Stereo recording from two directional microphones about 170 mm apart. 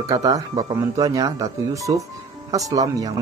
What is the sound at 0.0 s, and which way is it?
Speech, 20° right (ahead or behind).